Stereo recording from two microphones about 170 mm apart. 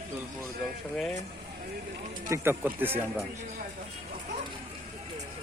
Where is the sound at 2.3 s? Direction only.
15° right (ahead or behind).